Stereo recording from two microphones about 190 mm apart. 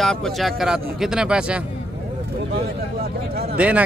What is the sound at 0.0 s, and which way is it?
A man's voice, centre (ahead or behind).